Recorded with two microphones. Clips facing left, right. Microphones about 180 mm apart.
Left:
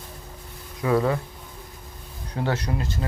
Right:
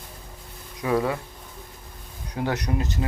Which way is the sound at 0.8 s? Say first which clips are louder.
Left 2 dB; 15° right (ahead or behind).